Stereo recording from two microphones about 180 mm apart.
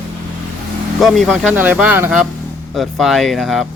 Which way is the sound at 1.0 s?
Centre (ahead or behind).